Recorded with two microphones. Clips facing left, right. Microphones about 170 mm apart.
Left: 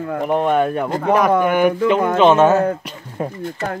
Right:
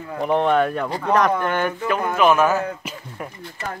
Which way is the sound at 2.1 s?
25° left (ahead or behind).